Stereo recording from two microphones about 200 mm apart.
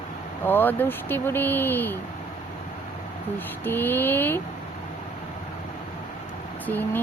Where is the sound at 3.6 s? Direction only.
10° left (ahead or behind).